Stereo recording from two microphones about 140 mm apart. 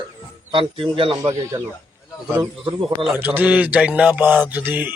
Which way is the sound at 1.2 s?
20° right (ahead or behind).